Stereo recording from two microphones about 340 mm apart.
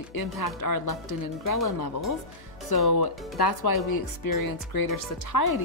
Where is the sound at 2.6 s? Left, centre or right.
Left.